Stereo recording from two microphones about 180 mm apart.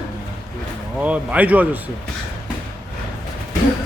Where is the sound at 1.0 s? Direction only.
5° right (ahead or behind).